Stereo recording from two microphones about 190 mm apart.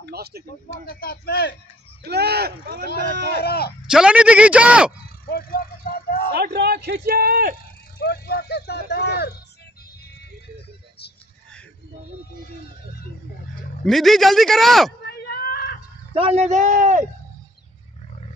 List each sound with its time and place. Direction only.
0.0 s a man's voice: 60° right (ahead or behind)
0.8 s speech: 55° left (ahead or behind)
2.0 s a man's voice: 60° right (ahead or behind)
3.3 s speech: 55° left (ahead or behind)
3.9 s speech: 5° right (ahead or behind)
5.2 s vehicle: 50° left (ahead or behind)
6.3 s a man's voice: 60° right (ahead or behind)
8.0 s speech: 55° left (ahead or behind)
13.8 s a man's voice: centre (ahead or behind)
15.0 s a sound: 55° left (ahead or behind)
16.1 s a man's voice: 30° right (ahead or behind)